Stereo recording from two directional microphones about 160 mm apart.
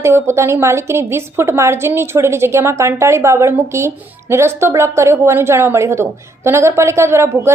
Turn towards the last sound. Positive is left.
turn(degrees=-15)  # may be behind; listen again after turning